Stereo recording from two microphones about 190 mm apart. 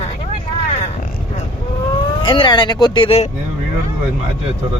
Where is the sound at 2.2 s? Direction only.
25° left (ahead or behind).